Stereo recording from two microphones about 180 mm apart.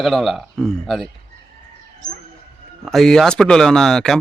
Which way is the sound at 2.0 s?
45° left (ahead or behind).